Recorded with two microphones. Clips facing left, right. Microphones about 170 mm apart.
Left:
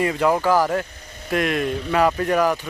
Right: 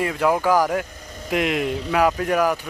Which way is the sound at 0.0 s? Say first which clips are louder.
Left 1 dB; centre (ahead or behind).